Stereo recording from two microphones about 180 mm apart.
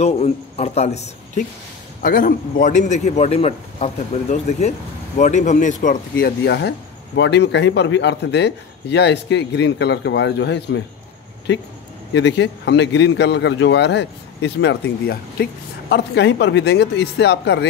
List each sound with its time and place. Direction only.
0.0 s a man's voice: 35° left (ahead or behind)
2.0 s a man's voice: 50° left (ahead or behind); by 10.8 s 80° left
12.1 s a man's voice: 80° left